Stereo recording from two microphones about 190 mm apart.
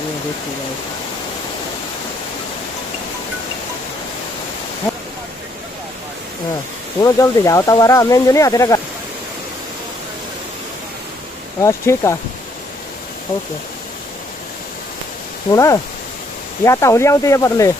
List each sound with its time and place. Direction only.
7.0 s speech: 15° left (ahead or behind)
11.6 s speech: 15° left (ahead or behind)
15.5 s speech: 15° left (ahead or behind)